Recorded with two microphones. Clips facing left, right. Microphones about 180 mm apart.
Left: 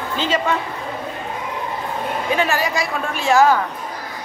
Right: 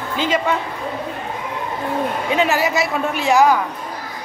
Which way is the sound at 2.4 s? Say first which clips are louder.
Right 5 dB; 20° right (ahead or behind).